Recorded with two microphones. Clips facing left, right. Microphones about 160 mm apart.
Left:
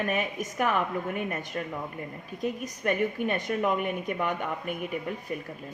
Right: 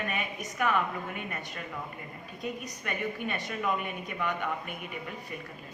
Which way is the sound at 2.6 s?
45° left (ahead or behind).